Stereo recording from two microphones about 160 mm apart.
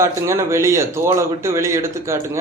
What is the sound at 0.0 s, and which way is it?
A man's voice, 20° right (ahead or behind).